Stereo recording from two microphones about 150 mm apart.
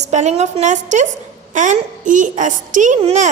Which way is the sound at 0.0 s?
50° right (ahead or behind).